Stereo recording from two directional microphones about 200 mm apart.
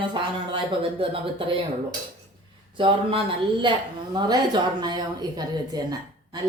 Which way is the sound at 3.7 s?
25° right (ahead or behind).